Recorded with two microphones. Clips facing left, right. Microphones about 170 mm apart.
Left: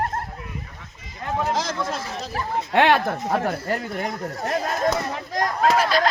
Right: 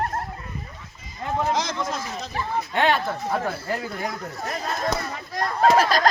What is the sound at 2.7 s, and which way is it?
Speech, 75° left (ahead or behind).